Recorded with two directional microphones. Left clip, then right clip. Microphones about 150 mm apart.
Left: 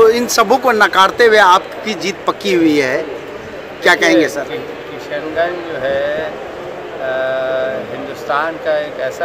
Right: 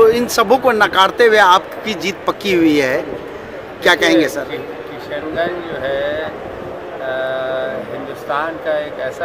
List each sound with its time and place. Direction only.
0.0 s a man's voice: centre (ahead or behind)
7.1 s mantra: 5° right (ahead or behind)
8.3 s speech: centre (ahead or behind)